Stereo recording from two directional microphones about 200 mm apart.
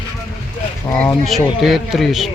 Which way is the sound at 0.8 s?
10° left (ahead or behind).